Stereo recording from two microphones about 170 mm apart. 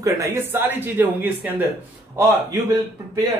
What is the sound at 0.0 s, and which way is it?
Speech, 15° right (ahead or behind).